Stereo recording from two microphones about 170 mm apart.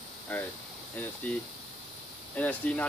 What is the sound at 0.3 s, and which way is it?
Speech, 10° left (ahead or behind).